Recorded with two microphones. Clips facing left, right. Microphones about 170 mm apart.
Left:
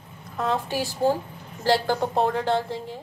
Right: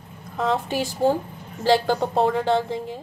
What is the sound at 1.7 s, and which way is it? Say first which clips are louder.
A woman's voice: right 3 dB; 20° right (ahead or behind).